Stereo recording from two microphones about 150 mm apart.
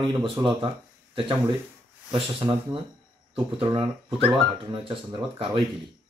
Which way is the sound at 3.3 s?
30° right (ahead or behind).